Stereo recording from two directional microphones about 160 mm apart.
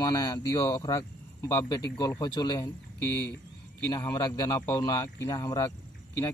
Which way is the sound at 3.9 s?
20° left (ahead or behind).